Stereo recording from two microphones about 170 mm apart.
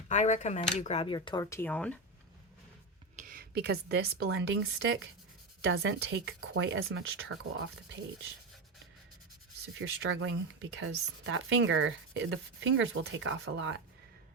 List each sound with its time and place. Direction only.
0.1 s speech: 45° left (ahead or behind); by 2.0 s 10° left (ahead or behind)
3.2 s speech: 55° right (ahead or behind); by 7.0 s 90° right
9.7 s speech: 90° right